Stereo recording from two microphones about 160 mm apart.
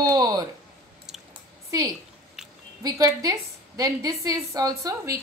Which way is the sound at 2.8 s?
25° right (ahead or behind).